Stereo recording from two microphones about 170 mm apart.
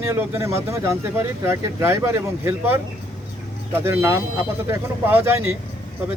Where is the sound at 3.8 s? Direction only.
15° right (ahead or behind).